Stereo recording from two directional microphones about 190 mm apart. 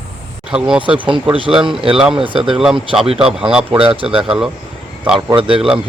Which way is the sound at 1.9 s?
5° right (ahead or behind).